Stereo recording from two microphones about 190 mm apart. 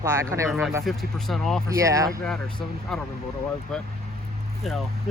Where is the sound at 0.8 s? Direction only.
Centre (ahead or behind).